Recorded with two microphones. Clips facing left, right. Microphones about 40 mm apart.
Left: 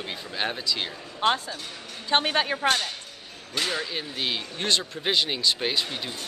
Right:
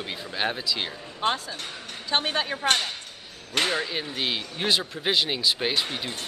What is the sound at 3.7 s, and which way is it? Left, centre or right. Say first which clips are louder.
Speech: right 2 dB; centre.